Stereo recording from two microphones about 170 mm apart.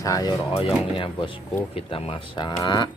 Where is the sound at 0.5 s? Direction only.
30° left (ahead or behind).